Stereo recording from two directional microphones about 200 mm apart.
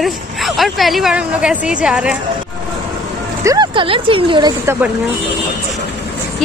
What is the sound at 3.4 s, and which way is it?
Speech, 20° right (ahead or behind).